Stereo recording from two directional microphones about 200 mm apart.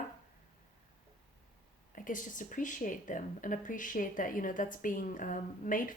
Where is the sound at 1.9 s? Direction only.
40° left (ahead or behind).